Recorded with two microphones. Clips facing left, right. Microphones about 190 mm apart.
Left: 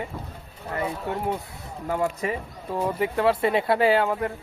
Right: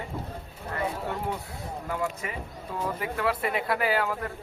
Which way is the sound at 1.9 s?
35° left (ahead or behind).